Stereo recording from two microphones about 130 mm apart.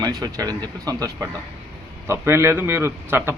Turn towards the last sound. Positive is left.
turn(degrees=-20)  # may be behind; listen again after turning